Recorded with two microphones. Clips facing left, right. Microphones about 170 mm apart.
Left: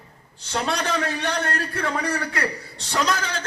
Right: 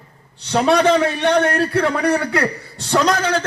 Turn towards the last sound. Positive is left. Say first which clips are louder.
# right 8 dB
turn(degrees=-65)  # may be behind; listen again after turning